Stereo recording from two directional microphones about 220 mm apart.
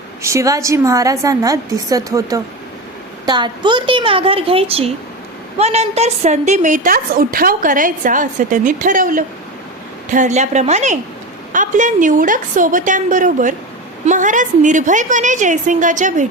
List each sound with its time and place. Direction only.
0.2 s a woman's voice: 15° right (ahead or behind); by 16.2 s 35° right (ahead or behind)